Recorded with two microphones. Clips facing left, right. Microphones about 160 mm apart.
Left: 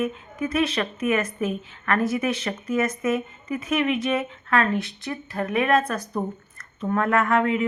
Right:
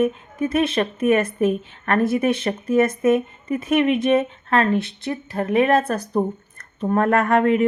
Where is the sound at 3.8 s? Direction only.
30° right (ahead or behind).